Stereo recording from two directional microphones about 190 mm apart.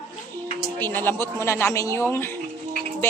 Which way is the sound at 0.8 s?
10° left (ahead or behind).